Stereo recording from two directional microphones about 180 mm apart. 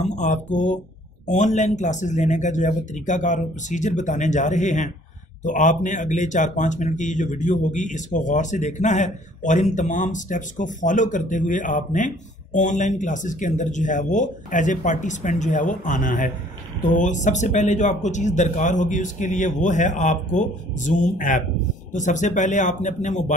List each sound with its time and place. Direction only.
0.2 s a sound: 40° left (ahead or behind)
1.2 s speech: 40° left (ahead or behind)
21.9 s speech: 45° left (ahead or behind)